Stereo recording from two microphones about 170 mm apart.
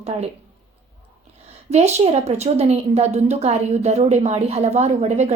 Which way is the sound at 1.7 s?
40° right (ahead or behind).